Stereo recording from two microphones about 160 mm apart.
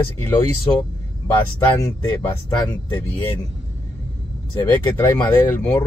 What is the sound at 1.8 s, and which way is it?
Speech, 15° left (ahead or behind).